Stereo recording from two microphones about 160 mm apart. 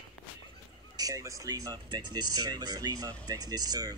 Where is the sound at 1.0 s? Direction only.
20° right (ahead or behind).